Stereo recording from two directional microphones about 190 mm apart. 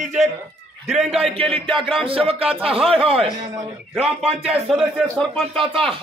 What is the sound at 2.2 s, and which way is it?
Music, 30° right (ahead or behind).